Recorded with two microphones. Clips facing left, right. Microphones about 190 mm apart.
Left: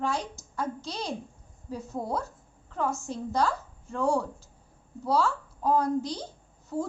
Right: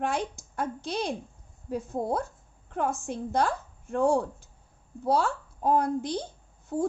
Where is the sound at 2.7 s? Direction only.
55° right (ahead or behind).